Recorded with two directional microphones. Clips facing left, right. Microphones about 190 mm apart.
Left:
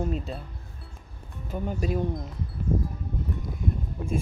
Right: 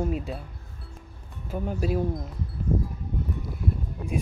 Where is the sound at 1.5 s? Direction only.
5° right (ahead or behind).